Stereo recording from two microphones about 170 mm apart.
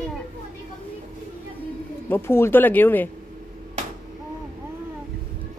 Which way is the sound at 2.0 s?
15° left (ahead or behind).